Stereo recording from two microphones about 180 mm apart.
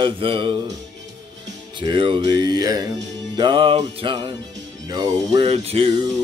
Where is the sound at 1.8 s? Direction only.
25° right (ahead or behind).